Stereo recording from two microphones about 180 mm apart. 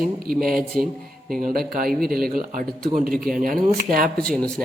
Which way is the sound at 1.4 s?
55° right (ahead or behind).